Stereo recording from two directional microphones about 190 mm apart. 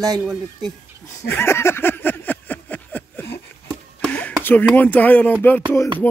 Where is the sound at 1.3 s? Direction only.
15° left (ahead or behind).